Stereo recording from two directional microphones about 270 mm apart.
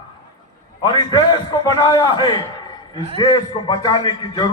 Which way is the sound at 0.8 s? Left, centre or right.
Centre.